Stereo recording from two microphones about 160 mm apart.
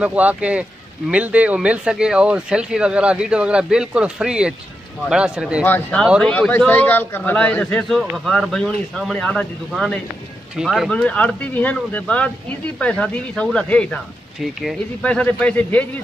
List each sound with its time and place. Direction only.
0.0 s speech: 10° right (ahead or behind)
5.6 s speech: 10° left (ahead or behind)